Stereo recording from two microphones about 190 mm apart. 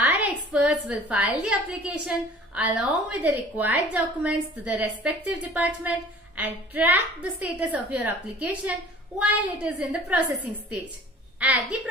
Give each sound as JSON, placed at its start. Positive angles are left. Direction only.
{"t": 0.0, "sound": "a woman's voice", "side_deg": -5}
{"t": 11.3, "sound": "a woman's voice", "side_deg": -10}